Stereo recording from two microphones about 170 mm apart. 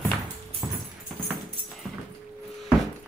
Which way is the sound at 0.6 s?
10° right (ahead or behind).